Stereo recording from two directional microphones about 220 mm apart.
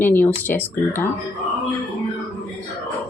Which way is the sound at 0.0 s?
10° left (ahead or behind).